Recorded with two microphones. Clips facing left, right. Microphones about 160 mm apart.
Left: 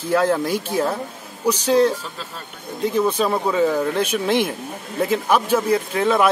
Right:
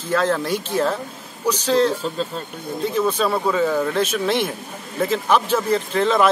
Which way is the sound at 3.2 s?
15° left (ahead or behind).